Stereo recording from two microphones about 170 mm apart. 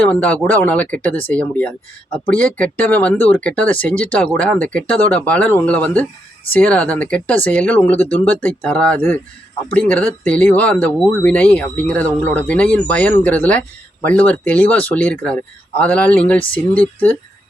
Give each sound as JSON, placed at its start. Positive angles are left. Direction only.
{"t": 0.0, "sound": "speech", "side_deg": 10}